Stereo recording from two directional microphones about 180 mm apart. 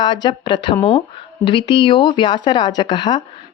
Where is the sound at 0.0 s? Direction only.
25° left (ahead or behind).